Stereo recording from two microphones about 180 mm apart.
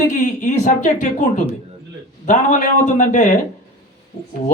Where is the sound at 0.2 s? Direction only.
40° left (ahead or behind).